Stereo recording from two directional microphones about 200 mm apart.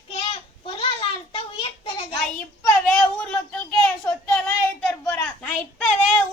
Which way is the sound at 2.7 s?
5° left (ahead or behind).